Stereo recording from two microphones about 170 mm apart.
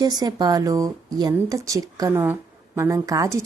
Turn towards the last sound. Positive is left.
turn(degrees=-20)  # may be behind; listen again after turning